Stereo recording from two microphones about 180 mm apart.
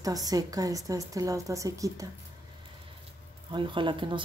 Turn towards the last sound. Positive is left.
turn(degrees=-25)  # may be behind; listen again after turning